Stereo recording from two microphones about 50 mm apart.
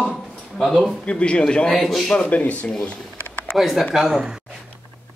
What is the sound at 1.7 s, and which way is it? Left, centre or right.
Speech, centre.